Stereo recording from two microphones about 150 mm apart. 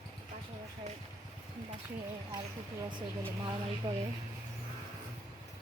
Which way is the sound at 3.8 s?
30° right (ahead or behind).